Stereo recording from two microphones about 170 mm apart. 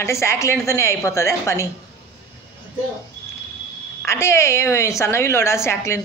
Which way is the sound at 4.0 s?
15° left (ahead or behind).